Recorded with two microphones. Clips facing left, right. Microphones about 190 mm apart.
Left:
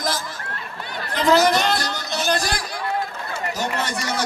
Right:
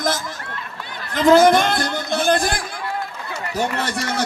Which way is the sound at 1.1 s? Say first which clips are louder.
Right 5 dB; 50° right (ahead or behind).